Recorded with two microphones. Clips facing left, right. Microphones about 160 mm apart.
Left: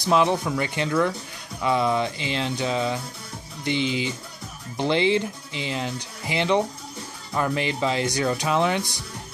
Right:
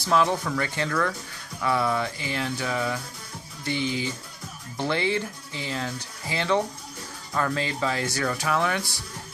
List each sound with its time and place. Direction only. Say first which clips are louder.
0.0 s speech: left 2 dB; 20° left (ahead or behind)